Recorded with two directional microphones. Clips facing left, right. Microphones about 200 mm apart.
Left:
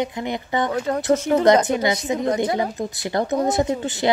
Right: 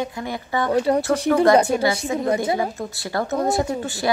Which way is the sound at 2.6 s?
20° left (ahead or behind).